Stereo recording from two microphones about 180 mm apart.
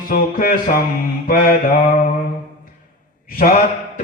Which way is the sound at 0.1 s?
55° left (ahead or behind).